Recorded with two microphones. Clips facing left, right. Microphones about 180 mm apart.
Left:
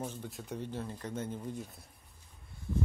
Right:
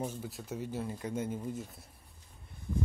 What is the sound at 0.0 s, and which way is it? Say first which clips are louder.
Speech: right 2 dB; 5° right (ahead or behind).